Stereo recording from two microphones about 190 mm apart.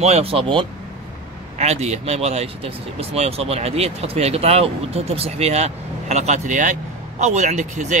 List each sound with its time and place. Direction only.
0.0 s speech: 30° right (ahead or behind)